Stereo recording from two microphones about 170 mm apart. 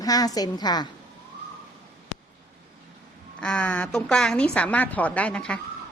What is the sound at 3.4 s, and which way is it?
Speech, 5° left (ahead or behind).